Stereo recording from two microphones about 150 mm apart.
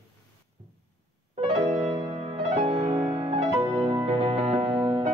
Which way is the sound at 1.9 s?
30° right (ahead or behind).